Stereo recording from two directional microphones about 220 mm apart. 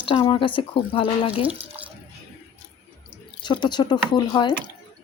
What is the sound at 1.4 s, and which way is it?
Speech, 5° right (ahead or behind).